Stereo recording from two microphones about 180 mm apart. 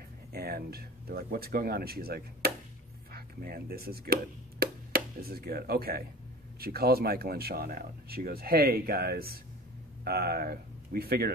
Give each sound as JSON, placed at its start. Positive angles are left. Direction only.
{"t": 0.3, "sound": "speech", "side_deg": -60}